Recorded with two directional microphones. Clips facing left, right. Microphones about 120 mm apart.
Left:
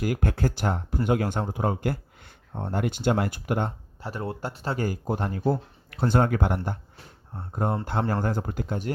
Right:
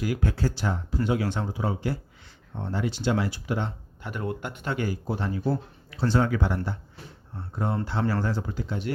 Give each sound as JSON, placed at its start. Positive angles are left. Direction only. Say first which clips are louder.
{"t": 0.0, "sound": "speech", "louder": "left 1 dB", "side_deg": 50}
{"t": 4.0, "sound": "speech", "louder": "even", "side_deg": 35}